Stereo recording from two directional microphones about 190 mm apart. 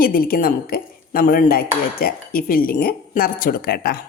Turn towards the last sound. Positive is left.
turn(degrees=50)  # may be behind; listen again after turning